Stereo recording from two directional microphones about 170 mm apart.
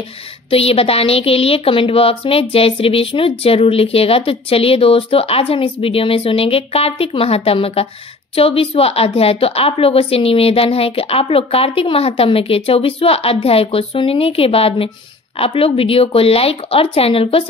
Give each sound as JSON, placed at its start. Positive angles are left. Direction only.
{"t": 0.5, "sound": "a woman's voice", "side_deg": 35}